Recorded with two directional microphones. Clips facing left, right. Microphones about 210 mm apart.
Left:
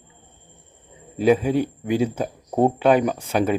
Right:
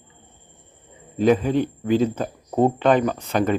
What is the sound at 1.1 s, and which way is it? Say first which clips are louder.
Speech: even; 10° left (ahead or behind).